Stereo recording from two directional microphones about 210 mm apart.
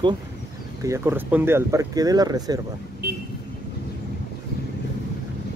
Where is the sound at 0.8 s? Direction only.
10° right (ahead or behind).